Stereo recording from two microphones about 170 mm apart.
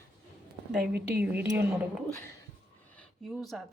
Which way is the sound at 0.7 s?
5° right (ahead or behind).